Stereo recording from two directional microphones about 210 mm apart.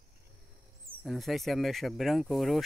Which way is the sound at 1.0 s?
Centre (ahead or behind).